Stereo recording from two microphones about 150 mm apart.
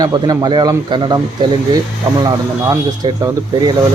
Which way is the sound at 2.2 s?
25° right (ahead or behind).